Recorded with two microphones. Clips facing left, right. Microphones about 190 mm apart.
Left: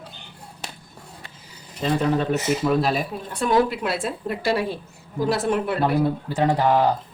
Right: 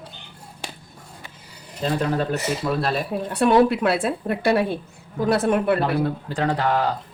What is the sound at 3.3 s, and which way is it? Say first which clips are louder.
A woman's voice: right 4 dB; 65° right (ahead or behind).